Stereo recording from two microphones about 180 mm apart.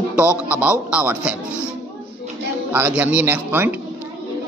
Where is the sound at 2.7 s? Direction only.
10° right (ahead or behind).